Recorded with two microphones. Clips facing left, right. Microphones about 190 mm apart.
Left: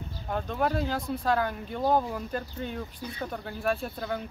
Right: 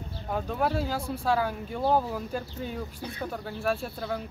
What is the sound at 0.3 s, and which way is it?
Speech, 5° right (ahead or behind).